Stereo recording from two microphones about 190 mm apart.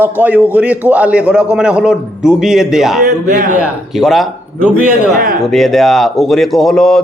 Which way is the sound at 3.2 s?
40° right (ahead or behind).